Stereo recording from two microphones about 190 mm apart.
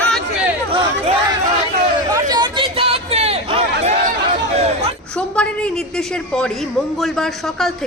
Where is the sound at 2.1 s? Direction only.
20° right (ahead or behind).